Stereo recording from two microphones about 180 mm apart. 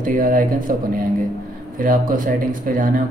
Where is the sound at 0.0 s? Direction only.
50° right (ahead or behind).